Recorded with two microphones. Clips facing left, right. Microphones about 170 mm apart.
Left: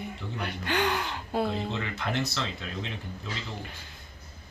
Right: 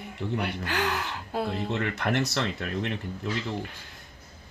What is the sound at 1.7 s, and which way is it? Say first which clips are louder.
A man's voice: right 4 dB; 65° right (ahead or behind).